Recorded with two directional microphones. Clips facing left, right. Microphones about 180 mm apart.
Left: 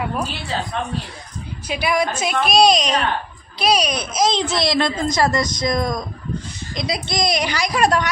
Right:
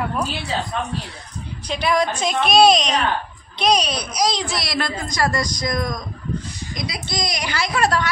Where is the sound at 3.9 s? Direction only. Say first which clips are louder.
Left 2 dB; 25° left (ahead or behind).